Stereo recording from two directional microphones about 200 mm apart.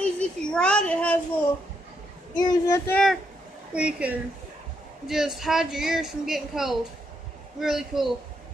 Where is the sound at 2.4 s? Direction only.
15° left (ahead or behind).